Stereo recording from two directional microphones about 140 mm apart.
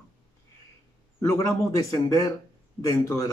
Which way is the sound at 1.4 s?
25° left (ahead or behind).